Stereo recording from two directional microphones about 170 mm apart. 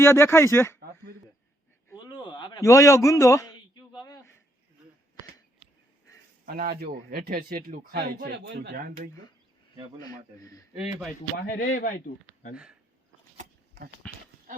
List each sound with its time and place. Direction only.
0.0 s speech: 15° left (ahead or behind)
1.9 s a sound: 25° left (ahead or behind)
6.4 s speech: 60° right (ahead or behind); by 8.8 s 80° right
10.0 s a man's voice: 20° left (ahead or behind)
10.8 s speech: 10° right (ahead or behind)
11.3 s speech: 50° left (ahead or behind)
14.0 s speech: 5° left (ahead or behind)